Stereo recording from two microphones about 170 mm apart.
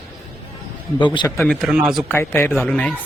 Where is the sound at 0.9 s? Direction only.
30° left (ahead or behind).